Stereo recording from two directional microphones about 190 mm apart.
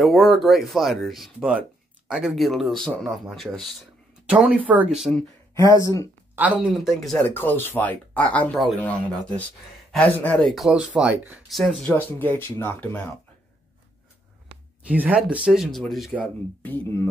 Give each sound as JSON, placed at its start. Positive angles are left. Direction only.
{"t": 0.0, "sound": "speech", "side_deg": 0}
{"t": 5.5, "sound": "speech", "side_deg": 15}
{"t": 6.3, "sound": "speech", "side_deg": -5}
{"t": 14.8, "sound": "speech", "side_deg": -10}
{"t": 16.6, "sound": "speech", "side_deg": 10}